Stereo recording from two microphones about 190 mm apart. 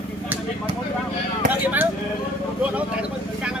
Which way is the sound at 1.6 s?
10° right (ahead or behind).